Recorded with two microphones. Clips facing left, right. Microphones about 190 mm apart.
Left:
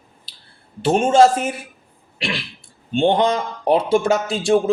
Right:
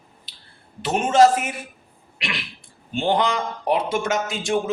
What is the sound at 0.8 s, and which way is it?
Speech, 30° left (ahead or behind).